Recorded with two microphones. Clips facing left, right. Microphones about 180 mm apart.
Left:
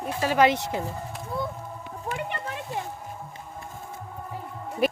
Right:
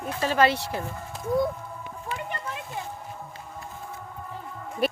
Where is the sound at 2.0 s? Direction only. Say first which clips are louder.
Left 2 dB; 60° left (ahead or behind).